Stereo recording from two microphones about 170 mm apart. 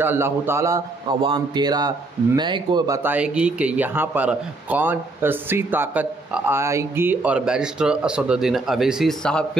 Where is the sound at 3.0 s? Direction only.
5° right (ahead or behind).